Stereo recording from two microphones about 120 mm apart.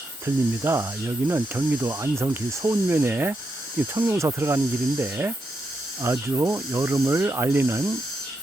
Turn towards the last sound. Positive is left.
turn(degrees=-20)  # may be behind; listen again after turning